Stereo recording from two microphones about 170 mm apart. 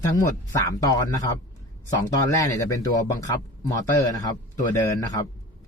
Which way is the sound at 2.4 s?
20° left (ahead or behind).